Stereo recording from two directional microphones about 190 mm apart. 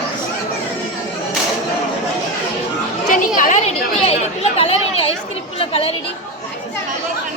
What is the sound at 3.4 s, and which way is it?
Chatter, 40° left (ahead or behind).